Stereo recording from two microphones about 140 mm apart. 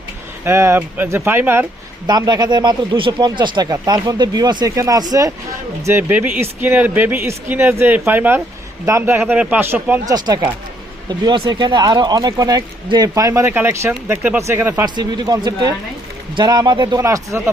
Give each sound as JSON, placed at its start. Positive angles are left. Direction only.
{"t": 0.4, "sound": "speech", "side_deg": -20}
{"t": 2.0, "sound": "speech", "side_deg": -30}
{"t": 5.8, "sound": "speech", "side_deg": -15}
{"t": 10.1, "sound": "speech", "side_deg": -30}
{"t": 14.8, "sound": "speech", "side_deg": -30}
{"t": 17.0, "sound": "speech", "side_deg": -20}